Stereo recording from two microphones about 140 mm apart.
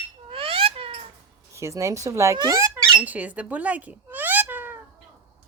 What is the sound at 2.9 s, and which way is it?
Cat, 10° right (ahead or behind).